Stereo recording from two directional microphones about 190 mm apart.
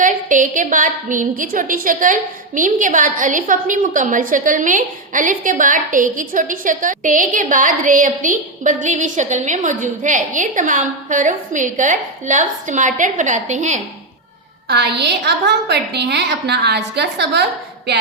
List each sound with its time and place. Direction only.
0.0 s a woman's voice: 45° right (ahead or behind)
14.7 s a woman's voice: 60° right (ahead or behind)